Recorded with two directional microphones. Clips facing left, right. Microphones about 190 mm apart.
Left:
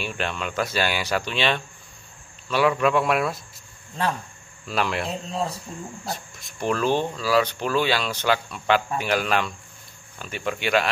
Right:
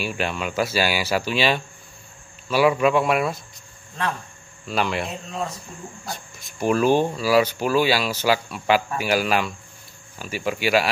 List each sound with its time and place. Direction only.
0.0 s speech: 5° right (ahead or behind)
4.6 s speech: centre (ahead or behind)
5.1 s speech: 30° left (ahead or behind)
6.0 s speech: centre (ahead or behind)